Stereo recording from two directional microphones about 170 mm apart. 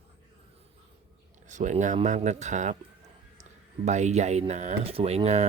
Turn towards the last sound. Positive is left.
turn(degrees=-40)  # may be behind; listen again after turning